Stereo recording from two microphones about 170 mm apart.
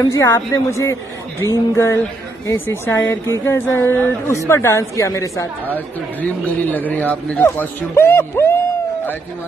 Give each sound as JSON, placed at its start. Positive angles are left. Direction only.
{"t": 0.1, "sound": "a man's voice", "side_deg": 20}